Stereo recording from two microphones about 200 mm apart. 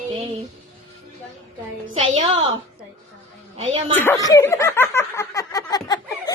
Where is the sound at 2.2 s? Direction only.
30° right (ahead or behind).